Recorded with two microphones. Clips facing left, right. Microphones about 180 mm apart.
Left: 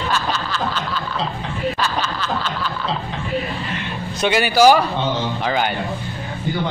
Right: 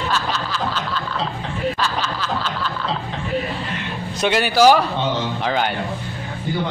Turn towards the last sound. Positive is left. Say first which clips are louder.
# even
turn(degrees=5)  # may be behind; listen again after turning